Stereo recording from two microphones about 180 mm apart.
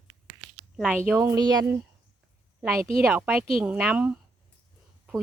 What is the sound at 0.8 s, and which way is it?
A woman's voice, 5° right (ahead or behind).